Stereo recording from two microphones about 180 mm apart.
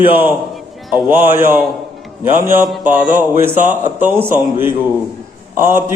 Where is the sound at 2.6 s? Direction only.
Centre (ahead or behind).